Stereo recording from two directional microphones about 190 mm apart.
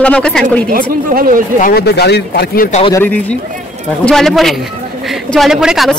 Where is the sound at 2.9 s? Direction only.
10° left (ahead or behind).